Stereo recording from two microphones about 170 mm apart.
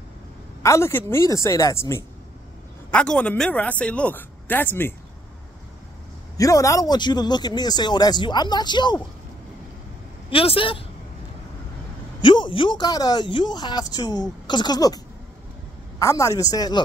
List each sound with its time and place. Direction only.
0.6 s speech: 15° left (ahead or behind)
6.3 s speech: 20° left (ahead or behind)
10.3 s speech: 35° left (ahead or behind)
12.2 s speech: 30° left (ahead or behind)
16.0 s speech: 20° left (ahead or behind)